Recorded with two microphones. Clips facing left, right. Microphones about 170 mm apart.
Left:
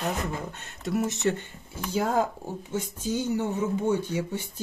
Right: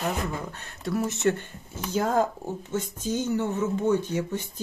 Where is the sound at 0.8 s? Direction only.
20° left (ahead or behind).